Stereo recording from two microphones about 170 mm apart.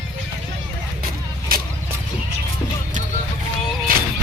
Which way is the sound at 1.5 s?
60° right (ahead or behind).